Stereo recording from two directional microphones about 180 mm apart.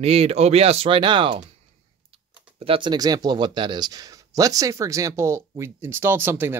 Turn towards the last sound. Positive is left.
turn(degrees=-10)  # may be behind; listen again after turning